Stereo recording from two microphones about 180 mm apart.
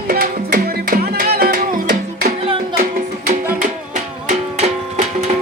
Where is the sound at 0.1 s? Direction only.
55° right (ahead or behind).